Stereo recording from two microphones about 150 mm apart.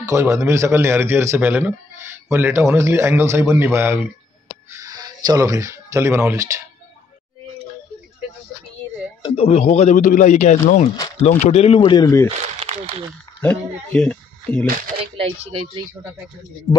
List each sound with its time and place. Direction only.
0.0 s a man's voice: 20° right (ahead or behind)
9.3 s a man's voice: 45° left (ahead or behind)
11.8 s speech: 30° left (ahead or behind)
12.3 s a sound: 45° right (ahead or behind)
13.4 s speech: 10° left (ahead or behind)
15.1 s speech: 40° right (ahead or behind)